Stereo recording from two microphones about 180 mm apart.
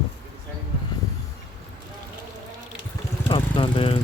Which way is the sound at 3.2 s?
30° left (ahead or behind).